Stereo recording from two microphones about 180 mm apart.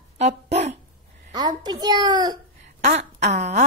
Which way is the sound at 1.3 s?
20° right (ahead or behind).